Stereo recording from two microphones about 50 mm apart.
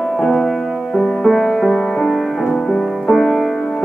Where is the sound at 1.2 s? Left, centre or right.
Centre.